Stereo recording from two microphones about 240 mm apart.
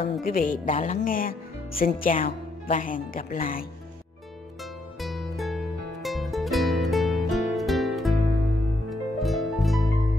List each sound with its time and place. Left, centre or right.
0.2 s speech: left
5.0 s music: centre
8.8 s harp: centre